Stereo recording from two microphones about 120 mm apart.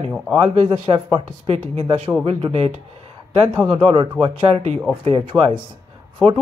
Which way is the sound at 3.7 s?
45° right (ahead or behind).